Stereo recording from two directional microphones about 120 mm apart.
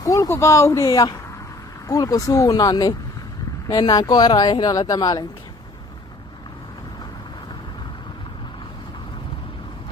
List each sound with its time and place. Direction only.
0.0 s speech: 30° left (ahead or behind)